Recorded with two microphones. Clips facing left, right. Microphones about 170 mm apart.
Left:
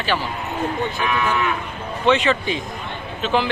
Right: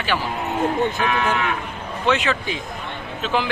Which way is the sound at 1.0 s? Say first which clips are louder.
Even; 60° right (ahead or behind).